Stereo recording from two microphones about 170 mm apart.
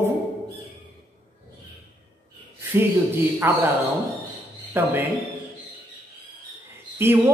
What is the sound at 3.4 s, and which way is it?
Speech, 15° right (ahead or behind).